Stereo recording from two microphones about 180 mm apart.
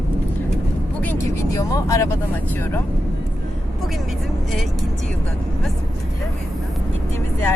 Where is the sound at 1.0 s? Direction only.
15° left (ahead or behind).